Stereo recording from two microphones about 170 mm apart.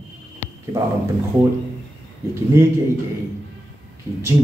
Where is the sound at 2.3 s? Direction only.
15° right (ahead or behind).